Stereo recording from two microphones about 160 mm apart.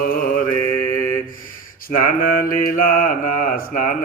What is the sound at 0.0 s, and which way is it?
Mantra, 60° left (ahead or behind).